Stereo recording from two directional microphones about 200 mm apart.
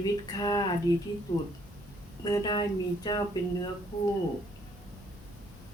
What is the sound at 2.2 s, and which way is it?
Speech, 20° left (ahead or behind).